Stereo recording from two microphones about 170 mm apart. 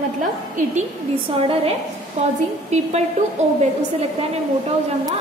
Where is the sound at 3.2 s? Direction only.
50° right (ahead or behind).